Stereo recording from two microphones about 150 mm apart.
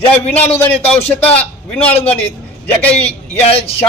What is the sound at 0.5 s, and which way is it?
Speech, 15° left (ahead or behind).